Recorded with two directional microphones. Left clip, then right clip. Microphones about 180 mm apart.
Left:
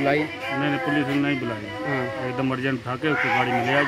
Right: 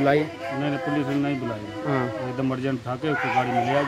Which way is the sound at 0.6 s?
15° right (ahead or behind).